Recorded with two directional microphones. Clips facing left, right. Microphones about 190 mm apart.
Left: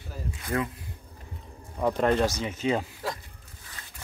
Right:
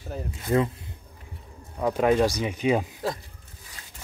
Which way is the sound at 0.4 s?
25° right (ahead or behind).